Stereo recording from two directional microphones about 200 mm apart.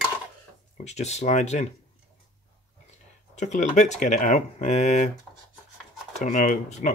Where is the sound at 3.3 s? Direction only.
35° left (ahead or behind).